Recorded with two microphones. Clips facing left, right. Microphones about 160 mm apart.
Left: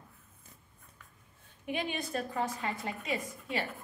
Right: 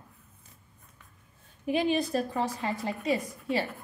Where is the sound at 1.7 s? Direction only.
35° right (ahead or behind).